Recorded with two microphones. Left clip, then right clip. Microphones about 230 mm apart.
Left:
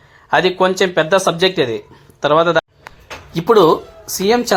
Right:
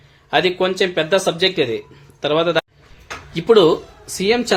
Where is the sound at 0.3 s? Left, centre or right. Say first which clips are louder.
Left 3 dB; centre.